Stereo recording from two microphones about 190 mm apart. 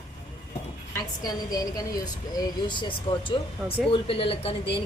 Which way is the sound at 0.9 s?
20° left (ahead or behind).